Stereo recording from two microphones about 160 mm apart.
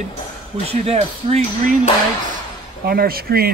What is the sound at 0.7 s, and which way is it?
Speech, 40° right (ahead or behind).